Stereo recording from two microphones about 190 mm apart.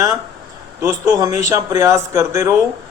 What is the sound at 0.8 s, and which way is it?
A man's voice, 20° right (ahead or behind).